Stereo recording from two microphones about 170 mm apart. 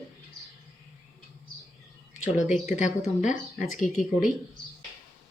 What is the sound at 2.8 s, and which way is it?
Speech, 45° left (ahead or behind).